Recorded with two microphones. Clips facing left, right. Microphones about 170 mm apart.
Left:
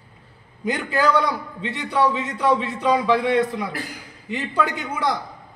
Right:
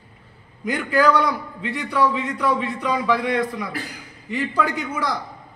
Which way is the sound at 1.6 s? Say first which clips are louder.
Even; 25° left (ahead or behind).